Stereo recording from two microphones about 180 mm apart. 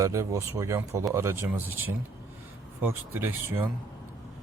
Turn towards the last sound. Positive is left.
turn(degrees=-10)  # may be behind; listen again after turning